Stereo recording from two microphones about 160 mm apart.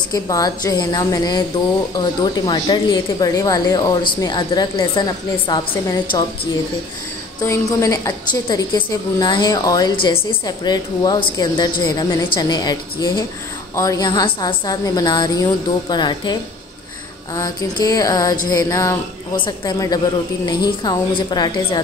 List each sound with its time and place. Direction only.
0.1 s speech: 20° left (ahead or behind)
7.4 s speech: 20° left (ahead or behind)
17.4 s speech: 25° left (ahead or behind)